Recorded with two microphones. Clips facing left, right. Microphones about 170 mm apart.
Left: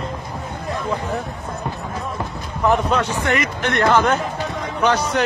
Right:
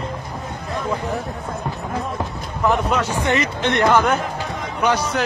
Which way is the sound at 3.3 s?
25° right (ahead or behind).